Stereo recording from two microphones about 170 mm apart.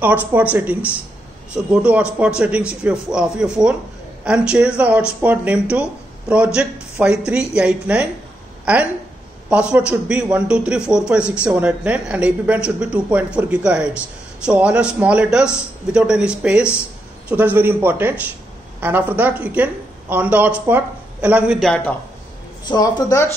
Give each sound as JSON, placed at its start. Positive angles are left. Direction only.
{"t": 0.3, "sound": "a man's voice", "side_deg": -10}
{"t": 9.5, "sound": "a man's voice", "side_deg": -5}
{"t": 22.7, "sound": "speech", "side_deg": 25}